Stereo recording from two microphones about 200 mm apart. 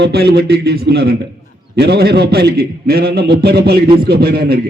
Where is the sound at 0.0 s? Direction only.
55° right (ahead or behind).